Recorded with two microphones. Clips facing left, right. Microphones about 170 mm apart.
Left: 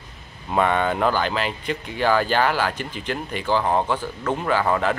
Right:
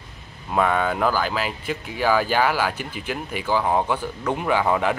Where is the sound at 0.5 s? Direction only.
Centre (ahead or behind).